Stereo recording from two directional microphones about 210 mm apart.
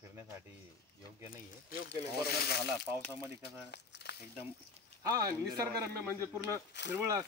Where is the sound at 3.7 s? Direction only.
50° left (ahead or behind).